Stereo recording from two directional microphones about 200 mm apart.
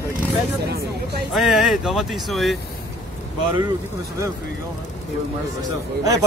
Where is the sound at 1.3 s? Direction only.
Centre (ahead or behind).